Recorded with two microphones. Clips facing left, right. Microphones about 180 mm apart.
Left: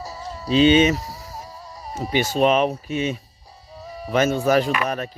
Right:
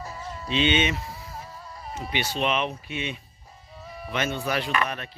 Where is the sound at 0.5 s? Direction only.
40° left (ahead or behind).